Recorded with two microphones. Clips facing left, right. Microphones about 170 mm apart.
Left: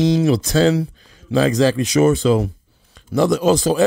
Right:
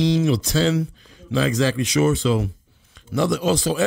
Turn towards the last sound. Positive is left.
turn(degrees=45)  # may be behind; listen again after turning